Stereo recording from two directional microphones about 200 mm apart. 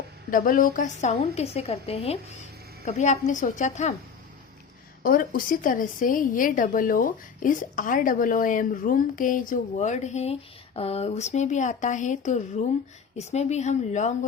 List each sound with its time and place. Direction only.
0.3 s a woman's voice: 45° left (ahead or behind)
5.0 s a woman's voice: 45° left (ahead or behind)